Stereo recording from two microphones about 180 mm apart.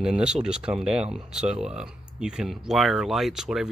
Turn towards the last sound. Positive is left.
turn(degrees=-5)  # may be behind; listen again after turning